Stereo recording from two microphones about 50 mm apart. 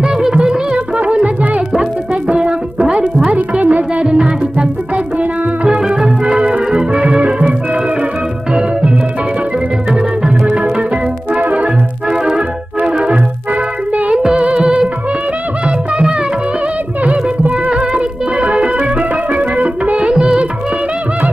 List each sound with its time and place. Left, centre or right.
0.0 s music: centre
1.0 s music: right
10.4 s organ: right
11.3 s music: right
12.1 s music: centre
17.0 s music: right